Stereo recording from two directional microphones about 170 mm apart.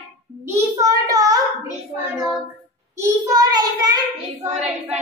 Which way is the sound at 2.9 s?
15° right (ahead or behind).